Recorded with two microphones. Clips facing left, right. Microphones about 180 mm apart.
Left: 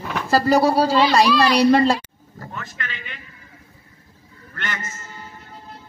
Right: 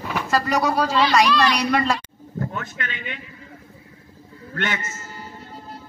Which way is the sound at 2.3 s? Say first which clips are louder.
Right 5 dB; 55° right (ahead or behind).